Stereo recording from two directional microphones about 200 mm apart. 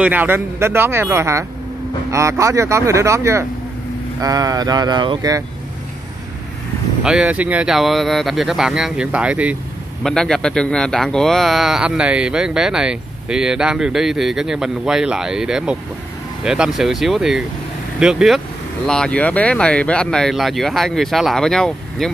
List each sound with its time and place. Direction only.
0.0 s speech: 10° right (ahead or behind)
7.0 s speech: 5° right (ahead or behind)